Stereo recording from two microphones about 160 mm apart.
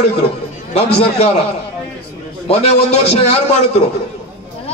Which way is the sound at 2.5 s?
40° left (ahead or behind).